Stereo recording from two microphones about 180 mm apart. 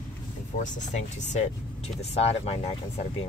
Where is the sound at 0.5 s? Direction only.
45° left (ahead or behind).